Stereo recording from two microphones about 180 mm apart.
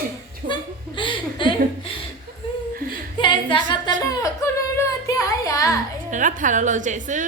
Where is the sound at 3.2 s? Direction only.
25° left (ahead or behind).